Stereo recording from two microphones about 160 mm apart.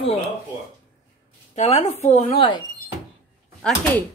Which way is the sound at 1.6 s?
40° left (ahead or behind).